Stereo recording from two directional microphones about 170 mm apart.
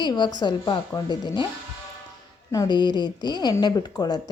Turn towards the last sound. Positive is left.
turn(degrees=25)  # may be behind; listen again after turning